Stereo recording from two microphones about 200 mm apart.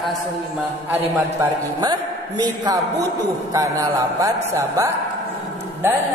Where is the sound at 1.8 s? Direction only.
20° right (ahead or behind).